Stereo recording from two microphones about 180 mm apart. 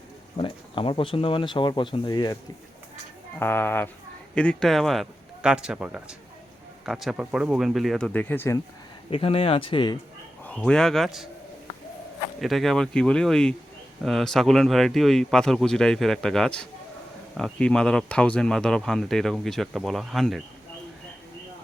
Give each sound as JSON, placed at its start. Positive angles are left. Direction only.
{"t": 0.3, "sound": "speech", "side_deg": 30}
{"t": 3.3, "sound": "speech", "side_deg": 10}
{"t": 9.0, "sound": "speech", "side_deg": 30}
{"t": 10.4, "sound": "speech", "side_deg": 5}
{"t": 12.4, "sound": "speech", "side_deg": 0}